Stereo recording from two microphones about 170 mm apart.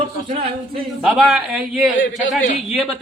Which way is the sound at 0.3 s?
35° right (ahead or behind).